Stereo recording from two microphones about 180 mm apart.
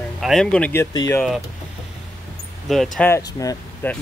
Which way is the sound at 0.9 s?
20° left (ahead or behind).